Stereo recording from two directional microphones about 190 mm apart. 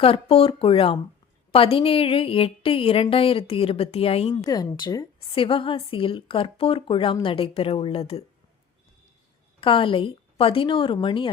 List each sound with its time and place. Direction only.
0.0 s a woman's voice: 30° left (ahead or behind)
4.4 s a woman's voice: 20° left (ahead or behind)
9.6 s a woman's voice: 25° left (ahead or behind)